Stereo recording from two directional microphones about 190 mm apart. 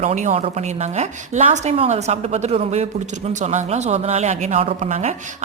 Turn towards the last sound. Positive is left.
turn(degrees=-35)  # may be behind; listen again after turning